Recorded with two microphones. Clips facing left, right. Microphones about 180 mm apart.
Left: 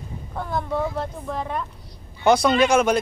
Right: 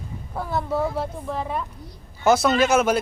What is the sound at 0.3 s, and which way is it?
Speech, 5° right (ahead or behind).